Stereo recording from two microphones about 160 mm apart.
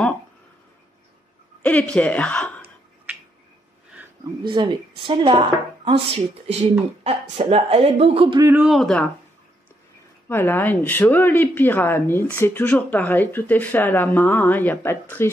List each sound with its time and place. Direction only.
1.6 s speech: 10° left (ahead or behind)
4.4 s speech: 30° right (ahead or behind)
8.4 s a man's voice: 15° right (ahead or behind)
8.6 s speech: centre (ahead or behind)
10.2 s a woman's voice: 15° left (ahead or behind)